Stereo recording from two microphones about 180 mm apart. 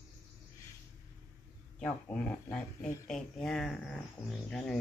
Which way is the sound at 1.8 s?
5° left (ahead or behind).